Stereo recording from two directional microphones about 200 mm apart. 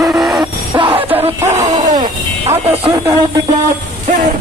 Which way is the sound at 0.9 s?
10° right (ahead or behind).